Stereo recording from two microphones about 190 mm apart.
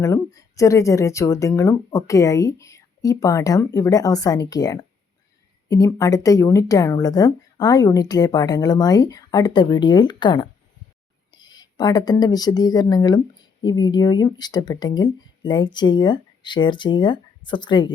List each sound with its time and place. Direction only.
0.0 s a woman's voice: 15° left (ahead or behind)